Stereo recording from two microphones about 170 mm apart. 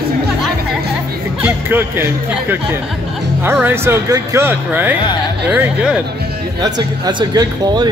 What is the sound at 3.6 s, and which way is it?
Speech, 15° right (ahead or behind).